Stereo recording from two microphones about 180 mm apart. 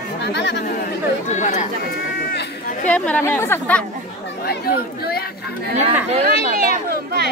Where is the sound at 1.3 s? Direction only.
45° left (ahead or behind).